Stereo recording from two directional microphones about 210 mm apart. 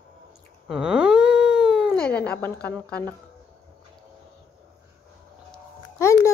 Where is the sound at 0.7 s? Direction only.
5° right (ahead or behind).